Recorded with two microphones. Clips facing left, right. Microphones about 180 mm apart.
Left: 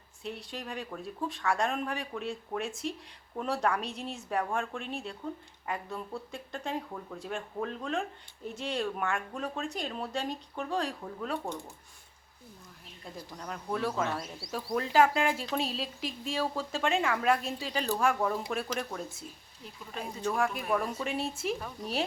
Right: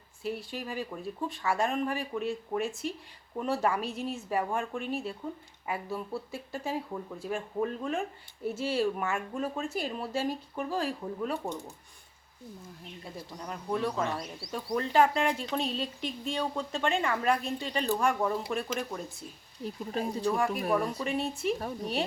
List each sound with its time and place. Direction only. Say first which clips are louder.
0.2 s speech: right 4 dB; 5° right (ahead or behind)
13.4 s speech: right 1 dB; centre (ahead or behind)
19.6 s speech: right 8 dB; 40° right (ahead or behind)
20.3 s speech: even; centre (ahead or behind)